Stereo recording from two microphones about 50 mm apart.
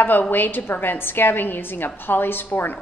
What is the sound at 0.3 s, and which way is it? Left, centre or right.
A woman's voice, left.